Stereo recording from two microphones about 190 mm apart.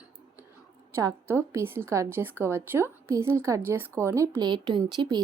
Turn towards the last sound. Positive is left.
turn(degrees=-25)  # may be behind; listen again after turning